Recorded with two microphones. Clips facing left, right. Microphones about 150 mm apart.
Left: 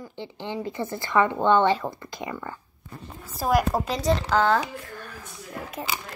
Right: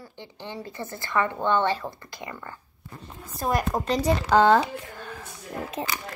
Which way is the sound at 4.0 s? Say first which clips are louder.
Right 4 dB; 15° right (ahead or behind).